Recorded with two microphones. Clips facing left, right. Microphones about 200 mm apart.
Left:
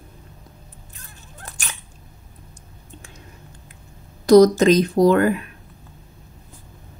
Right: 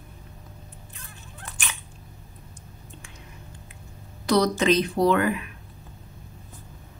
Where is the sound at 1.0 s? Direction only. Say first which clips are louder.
Left 2 dB; 40° left (ahead or behind).